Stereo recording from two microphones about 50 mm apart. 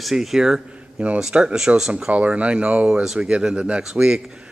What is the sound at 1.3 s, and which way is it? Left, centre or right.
Speech, centre.